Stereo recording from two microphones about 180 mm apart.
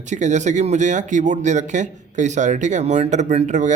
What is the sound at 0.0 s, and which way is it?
A man's voice, 40° right (ahead or behind).